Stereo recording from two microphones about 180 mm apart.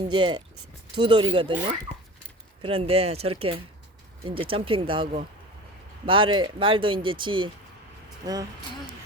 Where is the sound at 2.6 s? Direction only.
30° right (ahead or behind).